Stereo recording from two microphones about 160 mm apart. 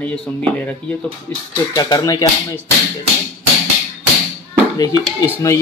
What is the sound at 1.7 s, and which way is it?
Speech, 20° left (ahead or behind).